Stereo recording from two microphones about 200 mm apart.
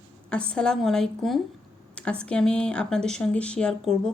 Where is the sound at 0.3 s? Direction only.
5° left (ahead or behind).